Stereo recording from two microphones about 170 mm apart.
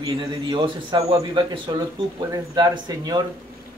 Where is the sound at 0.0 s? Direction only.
25° right (ahead or behind).